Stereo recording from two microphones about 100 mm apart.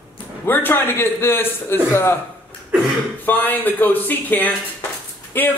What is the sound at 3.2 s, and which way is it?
Speech, 15° left (ahead or behind).